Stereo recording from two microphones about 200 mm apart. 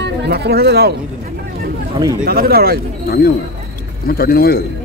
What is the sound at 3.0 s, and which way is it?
A man's voice, 50° left (ahead or behind).